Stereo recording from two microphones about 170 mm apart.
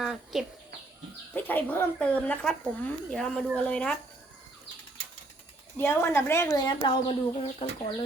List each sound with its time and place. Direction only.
0.0 s speech: centre (ahead or behind)
1.3 s speech: 10° left (ahead or behind)
5.7 s speech: 15° left (ahead or behind); by 7.9 s 35° left (ahead or behind)